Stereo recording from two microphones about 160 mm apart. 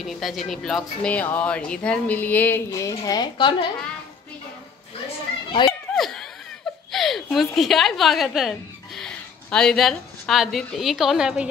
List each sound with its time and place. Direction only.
0.0 s speech: centre (ahead or behind)
2.9 s a woman's voice: 25° left (ahead or behind)
5.7 s a sound: centre (ahead or behind)
6.9 s a woman's voice: centre (ahead or behind)